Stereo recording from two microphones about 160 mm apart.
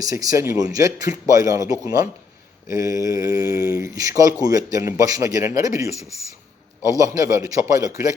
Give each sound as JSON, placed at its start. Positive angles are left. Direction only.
{"t": 0.0, "sound": "speech", "side_deg": -20}